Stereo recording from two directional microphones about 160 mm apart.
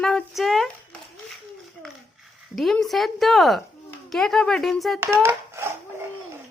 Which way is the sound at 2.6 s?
Centre (ahead or behind).